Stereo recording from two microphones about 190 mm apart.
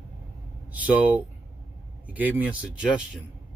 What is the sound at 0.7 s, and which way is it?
Speech, 10° right (ahead or behind).